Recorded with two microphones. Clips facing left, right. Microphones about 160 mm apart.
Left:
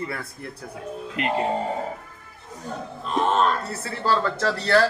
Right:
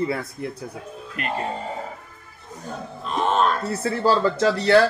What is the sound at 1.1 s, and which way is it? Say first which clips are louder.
Speech: left 3 dB; 20° left (ahead or behind).